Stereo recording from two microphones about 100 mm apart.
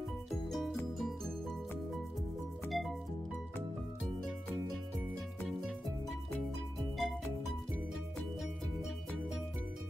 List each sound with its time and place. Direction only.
0.5 s music: 5° left (ahead or behind)
2.7 s music: centre (ahead or behind)
6.8 s music: centre (ahead or behind)